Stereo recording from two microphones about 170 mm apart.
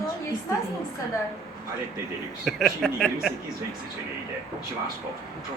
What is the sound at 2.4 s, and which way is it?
Speech, centre (ahead or behind).